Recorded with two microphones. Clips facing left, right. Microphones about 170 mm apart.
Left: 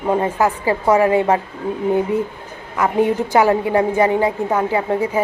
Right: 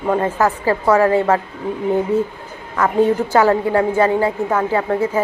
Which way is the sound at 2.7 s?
15° left (ahead or behind).